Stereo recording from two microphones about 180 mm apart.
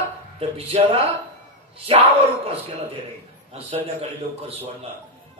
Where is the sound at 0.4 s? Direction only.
35° right (ahead or behind).